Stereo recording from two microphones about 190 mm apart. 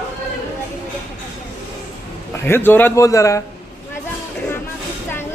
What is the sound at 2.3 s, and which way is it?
Speech, 10° left (ahead or behind).